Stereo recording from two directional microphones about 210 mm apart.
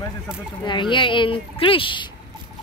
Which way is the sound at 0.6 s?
20° left (ahead or behind).